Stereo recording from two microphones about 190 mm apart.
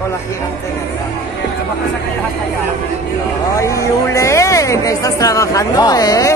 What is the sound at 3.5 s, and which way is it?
Speech, 15° left (ahead or behind).